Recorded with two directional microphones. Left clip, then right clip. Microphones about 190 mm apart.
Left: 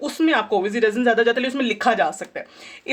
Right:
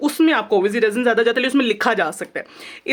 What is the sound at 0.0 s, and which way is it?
Speech, 45° right (ahead or behind).